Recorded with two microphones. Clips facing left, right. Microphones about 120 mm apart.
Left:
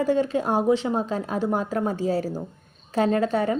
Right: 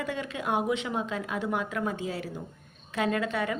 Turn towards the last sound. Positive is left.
turn(degrees=35)  # may be behind; listen again after turning